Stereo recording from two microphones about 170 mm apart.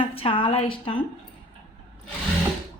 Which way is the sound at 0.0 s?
30° left (ahead or behind).